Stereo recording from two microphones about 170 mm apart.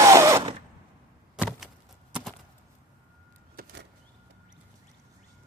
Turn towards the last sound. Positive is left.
turn(degrees=-65)  # may be behind; listen again after turning